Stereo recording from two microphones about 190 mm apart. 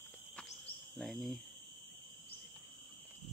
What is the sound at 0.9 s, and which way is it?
Speech, centre (ahead or behind).